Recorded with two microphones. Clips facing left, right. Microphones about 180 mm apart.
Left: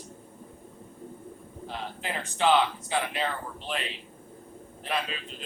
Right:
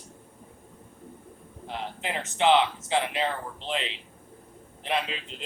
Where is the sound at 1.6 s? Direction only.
20° right (ahead or behind).